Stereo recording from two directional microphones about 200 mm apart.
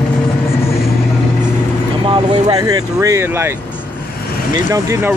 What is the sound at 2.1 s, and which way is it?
Speech, 20° right (ahead or behind).